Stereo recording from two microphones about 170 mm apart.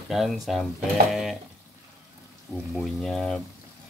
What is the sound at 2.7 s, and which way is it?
Speech, centre (ahead or behind).